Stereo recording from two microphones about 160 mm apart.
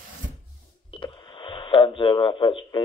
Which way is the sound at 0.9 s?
30° left (ahead or behind).